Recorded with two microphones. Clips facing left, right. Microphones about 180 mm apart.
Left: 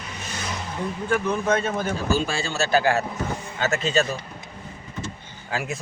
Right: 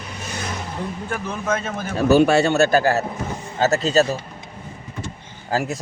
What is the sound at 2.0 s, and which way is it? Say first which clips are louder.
Speech: right 10 dB; 65° right (ahead or behind).